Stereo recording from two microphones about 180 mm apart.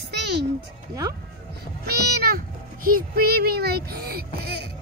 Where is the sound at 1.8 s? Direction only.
55° right (ahead or behind).